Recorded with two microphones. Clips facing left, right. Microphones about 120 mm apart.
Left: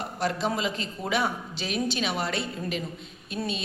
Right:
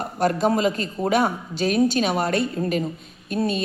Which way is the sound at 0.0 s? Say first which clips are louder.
Right 7 dB; 45° right (ahead or behind).